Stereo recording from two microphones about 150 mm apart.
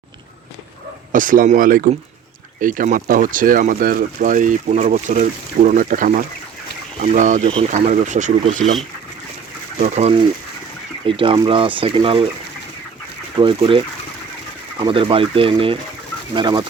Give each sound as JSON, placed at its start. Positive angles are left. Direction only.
{"t": 1.1, "sound": "speech", "side_deg": -65}
{"t": 7.0, "sound": "speech", "side_deg": -55}
{"t": 9.8, "sound": "speech", "side_deg": -50}
{"t": 11.0, "sound": "speech", "side_deg": -35}
{"t": 13.3, "sound": "speech", "side_deg": -30}